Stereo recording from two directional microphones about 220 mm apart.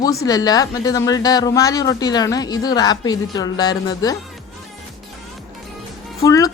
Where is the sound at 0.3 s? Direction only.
15° left (ahead or behind).